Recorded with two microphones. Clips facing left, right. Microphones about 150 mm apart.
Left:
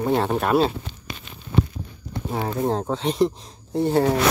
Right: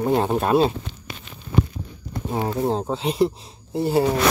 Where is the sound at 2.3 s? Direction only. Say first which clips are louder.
Right 1 dB; 15° right (ahead or behind).